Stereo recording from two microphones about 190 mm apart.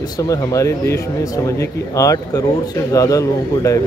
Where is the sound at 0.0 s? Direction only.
20° left (ahead or behind).